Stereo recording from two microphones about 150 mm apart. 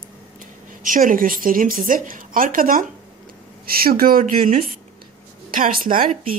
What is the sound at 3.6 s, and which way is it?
Speech, 85° right.